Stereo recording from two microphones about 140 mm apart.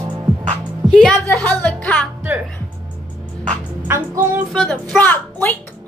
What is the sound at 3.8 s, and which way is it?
Music, 15° right (ahead or behind).